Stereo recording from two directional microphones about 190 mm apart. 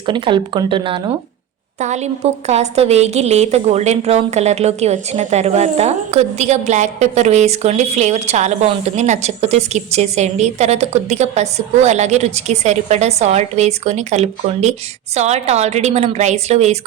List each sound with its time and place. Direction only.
0.0 s speech: 25° right (ahead or behind)
1.8 s a woman's voice: 35° right (ahead or behind)